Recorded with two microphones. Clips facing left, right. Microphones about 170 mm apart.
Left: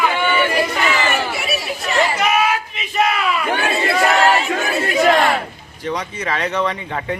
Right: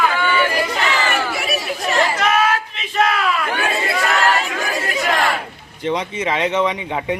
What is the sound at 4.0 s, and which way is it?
Choir, 35° left (ahead or behind).